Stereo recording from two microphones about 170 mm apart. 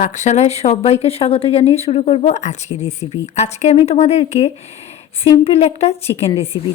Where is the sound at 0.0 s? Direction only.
45° left (ahead or behind).